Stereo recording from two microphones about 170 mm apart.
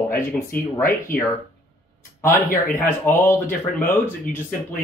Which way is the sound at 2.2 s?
15° left (ahead or behind).